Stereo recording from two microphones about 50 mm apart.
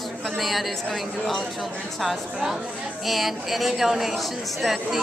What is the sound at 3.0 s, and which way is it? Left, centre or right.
Speech, centre.